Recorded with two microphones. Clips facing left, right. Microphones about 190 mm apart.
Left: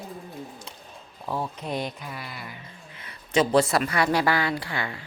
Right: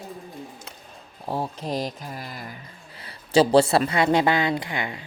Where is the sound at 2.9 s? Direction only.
35° right (ahead or behind).